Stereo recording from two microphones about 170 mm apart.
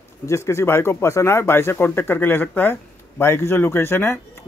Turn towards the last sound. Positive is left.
turn(degrees=15)  # may be behind; listen again after turning